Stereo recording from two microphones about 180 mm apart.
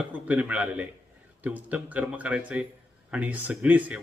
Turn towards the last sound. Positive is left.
turn(degrees=-10)  # may be behind; listen again after turning